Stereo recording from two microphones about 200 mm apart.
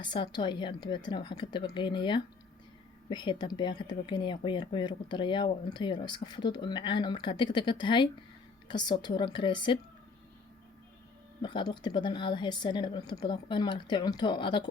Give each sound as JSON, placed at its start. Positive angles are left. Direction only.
{"t": 0.0, "sound": "speech", "side_deg": 25}
{"t": 11.4, "sound": "speech", "side_deg": 20}